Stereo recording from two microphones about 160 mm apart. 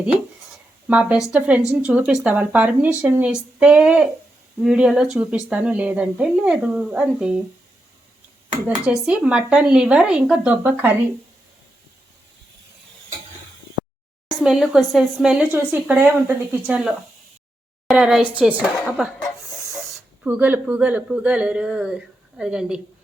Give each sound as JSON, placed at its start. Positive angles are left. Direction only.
{"t": 0.9, "sound": "a woman's voice", "side_deg": -10}
{"t": 8.6, "sound": "a woman's voice", "side_deg": -5}
{"t": 14.3, "sound": "speech", "side_deg": 0}
{"t": 17.8, "sound": "a sound", "side_deg": -5}
{"t": 20.2, "sound": "a woman's voice", "side_deg": -10}